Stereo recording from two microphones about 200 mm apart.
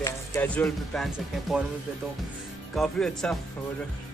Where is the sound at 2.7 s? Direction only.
Centre (ahead or behind).